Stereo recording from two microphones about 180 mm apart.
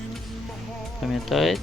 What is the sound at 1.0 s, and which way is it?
Speech, centre (ahead or behind).